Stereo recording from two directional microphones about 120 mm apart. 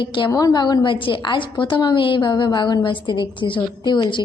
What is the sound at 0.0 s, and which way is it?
Speech, 45° left (ahead or behind).